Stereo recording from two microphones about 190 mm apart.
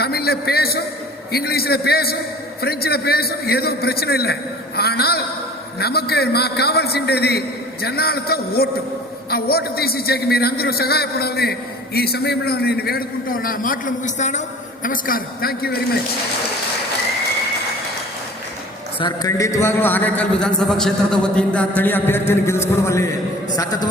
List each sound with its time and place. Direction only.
0.0 s a man's voice: 55° left (ahead or behind)
18.9 s a man's voice: 20° left (ahead or behind)